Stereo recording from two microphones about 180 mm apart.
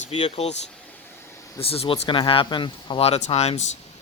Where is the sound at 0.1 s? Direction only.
35° left (ahead or behind).